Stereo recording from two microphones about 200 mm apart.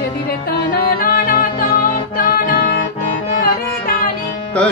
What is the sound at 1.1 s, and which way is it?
Music, 45° left (ahead or behind).